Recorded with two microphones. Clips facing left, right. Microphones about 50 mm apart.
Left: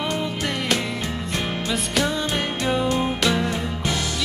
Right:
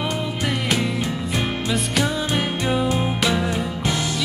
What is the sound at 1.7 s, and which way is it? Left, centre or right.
Music, centre.